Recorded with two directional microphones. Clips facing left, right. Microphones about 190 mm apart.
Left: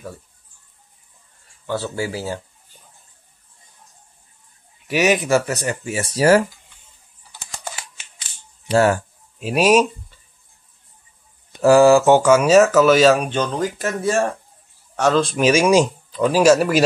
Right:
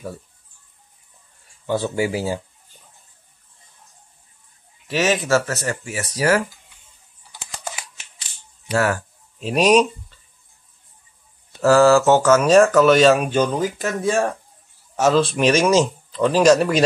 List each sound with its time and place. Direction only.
1.7 s speech: 15° right (ahead or behind)
4.8 s speech: 15° left (ahead or behind); by 6.4 s 30° left (ahead or behind)
8.6 s speech: 30° left (ahead or behind)
9.4 s speech: 5° left (ahead or behind)
11.5 s speech: 15° left (ahead or behind)